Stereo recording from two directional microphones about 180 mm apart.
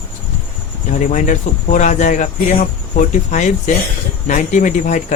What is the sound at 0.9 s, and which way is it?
Speech, 45° left (ahead or behind).